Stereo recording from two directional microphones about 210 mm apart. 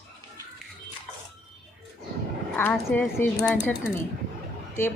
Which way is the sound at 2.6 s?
10° left (ahead or behind).